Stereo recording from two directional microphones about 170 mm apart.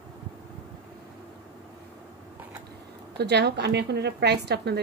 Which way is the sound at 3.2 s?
75° right (ahead or behind).